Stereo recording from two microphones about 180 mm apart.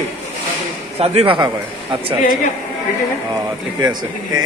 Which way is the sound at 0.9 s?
35° right (ahead or behind).